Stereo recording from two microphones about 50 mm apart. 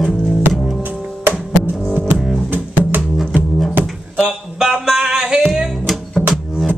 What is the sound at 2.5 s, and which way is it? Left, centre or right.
Music, right.